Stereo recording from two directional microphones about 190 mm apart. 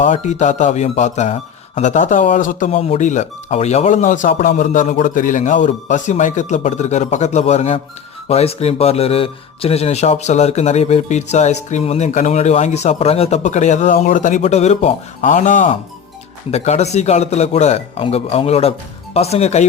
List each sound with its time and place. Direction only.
0.0 s speech: 40° left (ahead or behind)
2.7 s speech: 30° left (ahead or behind)